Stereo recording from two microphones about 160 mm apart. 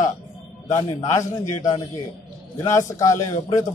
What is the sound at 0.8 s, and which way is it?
A man's voice, 25° left (ahead or behind).